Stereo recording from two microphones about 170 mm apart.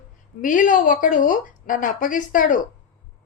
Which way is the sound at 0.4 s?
50° left (ahead or behind).